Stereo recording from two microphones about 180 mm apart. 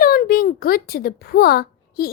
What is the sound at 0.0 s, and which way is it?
A child's voice, 55° left (ahead or behind).